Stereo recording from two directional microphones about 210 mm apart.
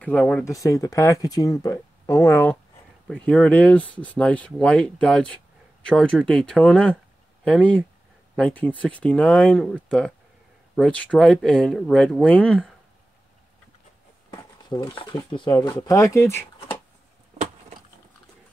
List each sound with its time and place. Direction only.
0.2 s speech: 5° left (ahead or behind)
0.5 s speech: 15° left (ahead or behind)
14.3 s speech: 20° left (ahead or behind)